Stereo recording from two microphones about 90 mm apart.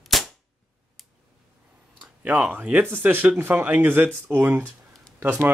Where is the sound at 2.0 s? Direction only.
15° right (ahead or behind).